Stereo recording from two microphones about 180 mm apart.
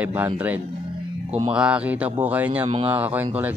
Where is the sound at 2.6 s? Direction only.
30° right (ahead or behind).